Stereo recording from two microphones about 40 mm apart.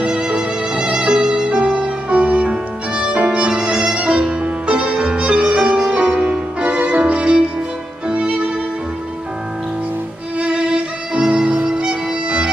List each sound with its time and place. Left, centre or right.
0.0 s music: right
3.3 s violin: right
4.2 s music: right
8.1 s violin: right
10.4 s violin: centre